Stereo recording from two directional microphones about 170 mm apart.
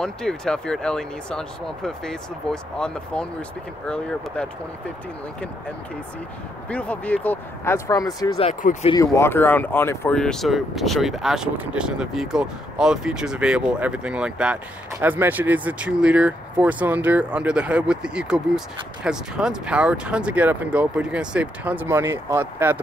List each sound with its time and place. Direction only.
0.0 s speech: 5° left (ahead or behind)
6.7 s speech: 10° left (ahead or behind); by 22.8 s 15° right (ahead or behind)